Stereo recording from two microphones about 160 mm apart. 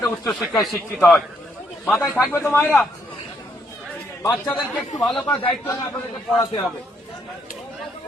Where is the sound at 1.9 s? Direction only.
15° left (ahead or behind).